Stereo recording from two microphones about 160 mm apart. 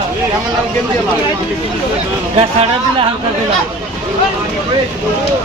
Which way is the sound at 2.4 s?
40° right (ahead or behind).